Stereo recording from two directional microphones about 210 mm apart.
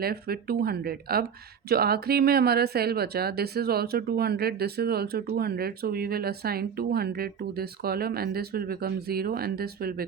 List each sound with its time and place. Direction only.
0.0 s speech: 45° right (ahead or behind)